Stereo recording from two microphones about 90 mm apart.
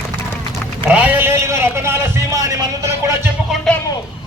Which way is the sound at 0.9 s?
15° right (ahead or behind).